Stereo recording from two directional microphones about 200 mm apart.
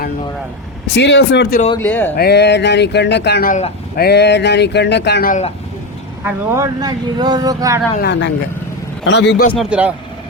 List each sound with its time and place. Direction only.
0.9 s speech: 60° left (ahead or behind)
1.8 s speech: 10° left (ahead or behind)
2.1 s speech: 55° left (ahead or behind)
6.2 s speech: 10° right (ahead or behind)
8.0 s speech: 60° left (ahead or behind)
9.6 s speech: 5° right (ahead or behind)